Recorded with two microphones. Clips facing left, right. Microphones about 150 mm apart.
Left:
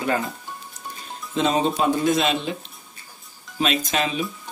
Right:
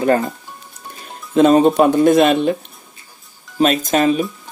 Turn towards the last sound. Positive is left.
turn(degrees=-45)  # may be behind; listen again after turning